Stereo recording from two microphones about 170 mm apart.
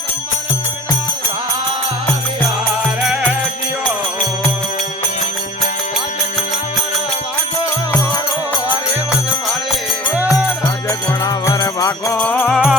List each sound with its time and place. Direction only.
3.0 s music: 5° right (ahead or behind)
10.2 s music: 5° right (ahead or behind)
10.8 s music: 20° left (ahead or behind)
12.2 s music: 10° left (ahead or behind)